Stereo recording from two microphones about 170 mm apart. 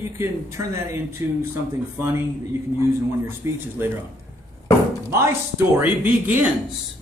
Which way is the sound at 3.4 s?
15° right (ahead or behind).